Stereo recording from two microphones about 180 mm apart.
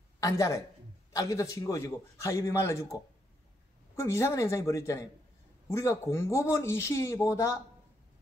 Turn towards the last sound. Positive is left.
turn(degrees=15)  # may be behind; listen again after turning